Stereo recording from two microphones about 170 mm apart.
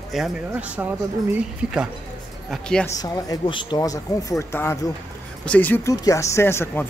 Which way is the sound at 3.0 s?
20° left (ahead or behind).